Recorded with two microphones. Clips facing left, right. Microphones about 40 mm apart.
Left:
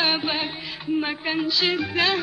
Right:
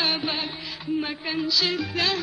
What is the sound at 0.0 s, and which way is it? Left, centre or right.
Music, centre.